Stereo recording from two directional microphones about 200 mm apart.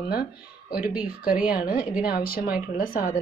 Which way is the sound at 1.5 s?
45° left (ahead or behind).